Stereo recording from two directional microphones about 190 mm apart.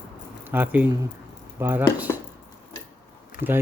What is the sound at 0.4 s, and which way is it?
Speech, 10° right (ahead or behind).